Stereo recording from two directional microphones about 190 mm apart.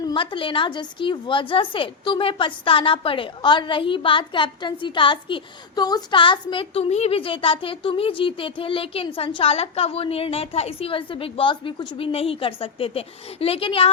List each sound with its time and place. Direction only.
0.0 s a woman's voice: 25° left (ahead or behind)